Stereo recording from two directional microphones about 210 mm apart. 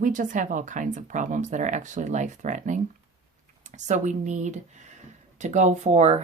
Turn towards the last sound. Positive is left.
turn(degrees=-35)  # may be behind; listen again after turning